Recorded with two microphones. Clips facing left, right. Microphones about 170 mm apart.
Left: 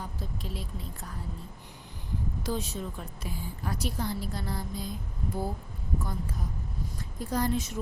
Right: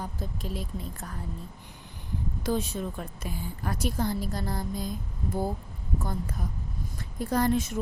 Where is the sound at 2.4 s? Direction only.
55° right (ahead or behind).